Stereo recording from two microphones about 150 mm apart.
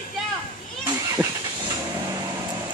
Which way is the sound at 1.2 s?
25° right (ahead or behind).